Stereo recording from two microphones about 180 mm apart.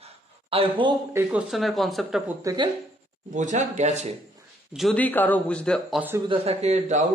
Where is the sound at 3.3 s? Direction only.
40° right (ahead or behind).